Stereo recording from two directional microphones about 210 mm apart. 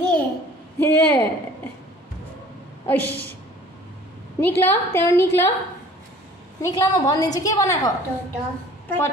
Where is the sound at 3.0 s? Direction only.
50° left (ahead or behind).